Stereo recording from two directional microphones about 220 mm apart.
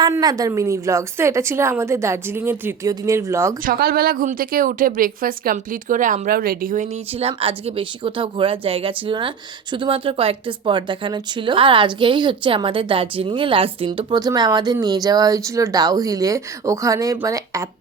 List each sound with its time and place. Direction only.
0.0 s a woman's voice: 15° right (ahead or behind)
3.7 s speech: 40° right (ahead or behind); by 17.7 s 15° right (ahead or behind)